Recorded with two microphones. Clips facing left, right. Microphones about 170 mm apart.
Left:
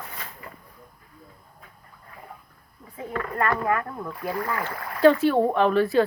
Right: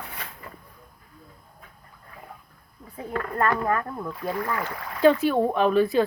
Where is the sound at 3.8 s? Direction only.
10° left (ahead or behind).